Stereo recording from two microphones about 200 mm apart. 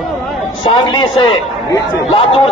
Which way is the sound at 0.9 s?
25° left (ahead or behind).